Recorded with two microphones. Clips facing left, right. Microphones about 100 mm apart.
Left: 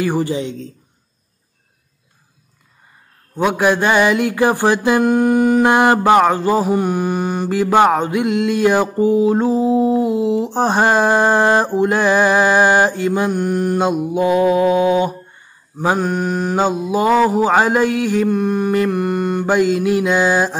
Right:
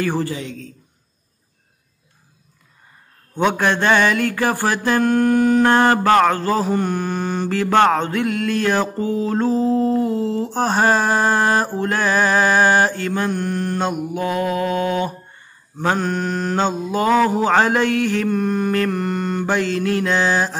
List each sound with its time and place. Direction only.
0.0 s a man's voice: 15° left (ahead or behind)
3.5 s mantra: 10° left (ahead or behind)